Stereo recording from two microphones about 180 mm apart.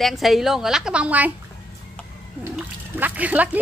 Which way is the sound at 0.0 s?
Centre (ahead or behind).